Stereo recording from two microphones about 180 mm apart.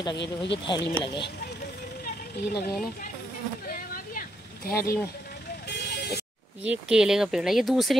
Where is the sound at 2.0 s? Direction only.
60° left (ahead or behind).